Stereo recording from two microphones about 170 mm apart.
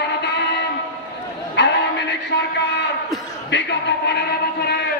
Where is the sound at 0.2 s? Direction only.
80° left.